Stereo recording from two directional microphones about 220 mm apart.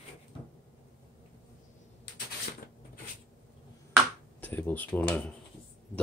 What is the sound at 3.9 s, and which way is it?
Finger snapping, 10° left (ahead or behind).